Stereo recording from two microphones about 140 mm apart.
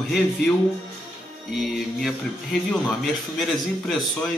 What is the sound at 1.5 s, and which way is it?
Speech, centre (ahead or behind).